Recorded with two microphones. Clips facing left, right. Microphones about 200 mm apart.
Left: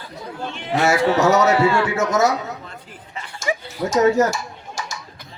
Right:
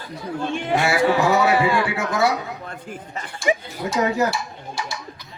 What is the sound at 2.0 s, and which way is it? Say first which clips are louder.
Speech: left 3 dB; 45° left (ahead or behind).